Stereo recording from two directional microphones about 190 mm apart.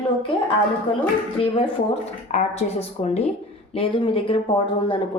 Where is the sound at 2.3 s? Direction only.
35° left (ahead or behind).